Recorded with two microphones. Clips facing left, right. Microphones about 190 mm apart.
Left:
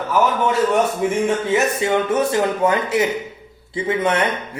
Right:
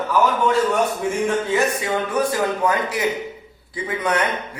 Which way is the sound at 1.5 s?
25° left (ahead or behind).